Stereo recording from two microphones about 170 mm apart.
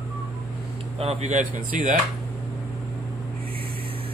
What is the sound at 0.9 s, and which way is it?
Speech, 40° right (ahead or behind).